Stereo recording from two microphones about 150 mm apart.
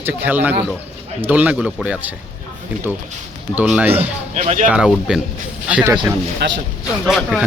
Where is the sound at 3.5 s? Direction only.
5° right (ahead or behind).